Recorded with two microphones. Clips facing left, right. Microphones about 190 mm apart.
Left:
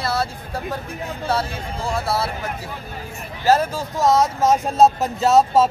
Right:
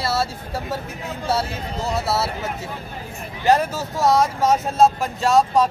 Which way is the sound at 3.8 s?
Centre (ahead or behind).